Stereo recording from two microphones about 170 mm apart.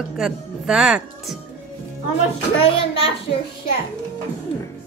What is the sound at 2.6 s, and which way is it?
Speech, 35° left (ahead or behind).